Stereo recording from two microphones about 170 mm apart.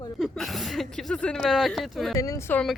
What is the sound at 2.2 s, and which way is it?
Speech, 20° left (ahead or behind).